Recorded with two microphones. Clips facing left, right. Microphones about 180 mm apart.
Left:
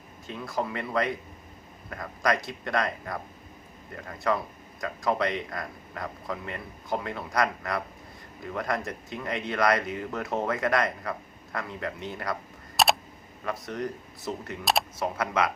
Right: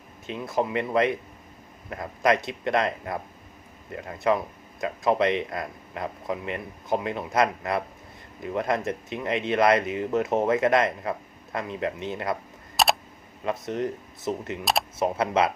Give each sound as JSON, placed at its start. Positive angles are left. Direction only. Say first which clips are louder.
{"t": 0.3, "sound": "speech", "louder": "right 4 dB", "side_deg": -20}
{"t": 12.7, "sound": "camera", "louder": "right 1 dB", "side_deg": 0}
{"t": 13.4, "sound": "speech", "louder": "right 4 dB", "side_deg": -20}
{"t": 14.6, "sound": "speech", "louder": "left 1 dB", "side_deg": 0}
{"t": 14.9, "sound": "speech", "louder": "right 4 dB", "side_deg": -20}